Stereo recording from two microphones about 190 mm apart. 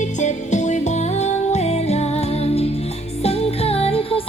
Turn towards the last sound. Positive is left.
turn(degrees=30)  # may be behind; listen again after turning